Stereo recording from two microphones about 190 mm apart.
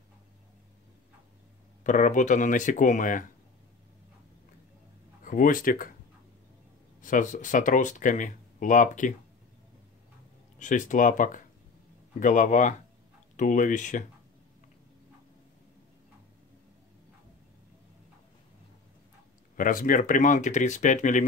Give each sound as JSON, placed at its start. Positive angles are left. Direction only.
{"t": 1.8, "sound": "speech", "side_deg": 40}
{"t": 5.2, "sound": "speech", "side_deg": 45}
{"t": 7.0, "sound": "speech", "side_deg": 45}
{"t": 10.6, "sound": "speech", "side_deg": 40}
{"t": 19.5, "sound": "speech", "side_deg": 45}